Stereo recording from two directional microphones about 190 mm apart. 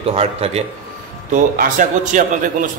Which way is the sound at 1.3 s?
45° right (ahead or behind).